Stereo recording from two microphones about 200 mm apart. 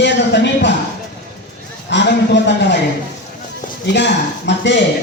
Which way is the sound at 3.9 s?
60° left (ahead or behind).